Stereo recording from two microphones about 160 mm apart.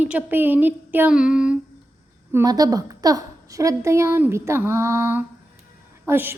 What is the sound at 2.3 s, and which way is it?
A woman's voice, 20° right (ahead or behind).